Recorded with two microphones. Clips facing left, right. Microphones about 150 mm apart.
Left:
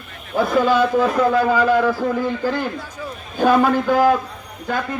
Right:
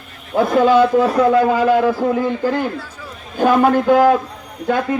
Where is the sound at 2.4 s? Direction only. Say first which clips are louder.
Right 3 dB; 55° right (ahead or behind).